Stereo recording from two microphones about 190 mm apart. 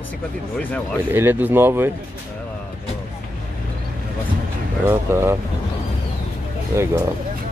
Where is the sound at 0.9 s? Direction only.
10° right (ahead or behind).